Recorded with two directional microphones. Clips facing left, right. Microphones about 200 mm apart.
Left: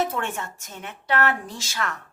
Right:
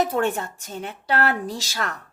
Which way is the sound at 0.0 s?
35° right (ahead or behind).